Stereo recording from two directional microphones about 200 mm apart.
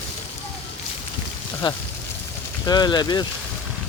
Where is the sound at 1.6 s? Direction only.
25° left (ahead or behind).